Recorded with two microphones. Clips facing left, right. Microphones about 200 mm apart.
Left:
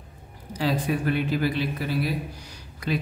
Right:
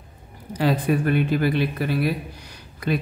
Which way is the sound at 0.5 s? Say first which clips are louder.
Right 4 dB; 55° right (ahead or behind).